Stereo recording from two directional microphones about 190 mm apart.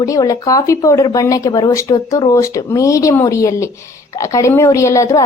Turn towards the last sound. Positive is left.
turn(degrees=15)  # may be behind; listen again after turning